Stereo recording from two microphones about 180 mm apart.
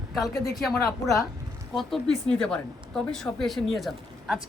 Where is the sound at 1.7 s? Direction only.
Centre (ahead or behind).